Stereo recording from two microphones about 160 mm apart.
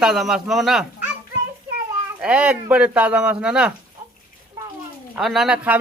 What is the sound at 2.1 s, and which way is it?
Speech, 5° right (ahead or behind).